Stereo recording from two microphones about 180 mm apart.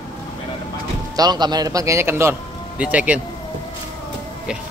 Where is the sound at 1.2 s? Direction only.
25° right (ahead or behind); by 3.2 s 5° right (ahead or behind).